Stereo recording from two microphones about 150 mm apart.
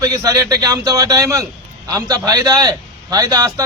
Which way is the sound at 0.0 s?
25° right (ahead or behind).